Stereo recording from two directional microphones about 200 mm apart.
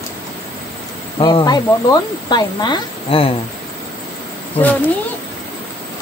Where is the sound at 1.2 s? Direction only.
20° left (ahead or behind).